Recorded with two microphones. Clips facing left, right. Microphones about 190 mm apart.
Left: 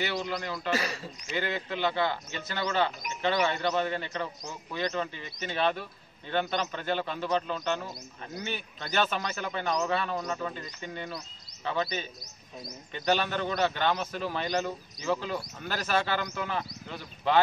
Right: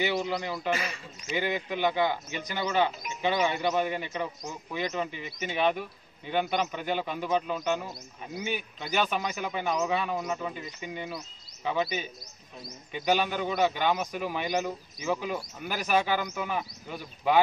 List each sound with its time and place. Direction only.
0.0 s a man's voice: 15° right (ahead or behind)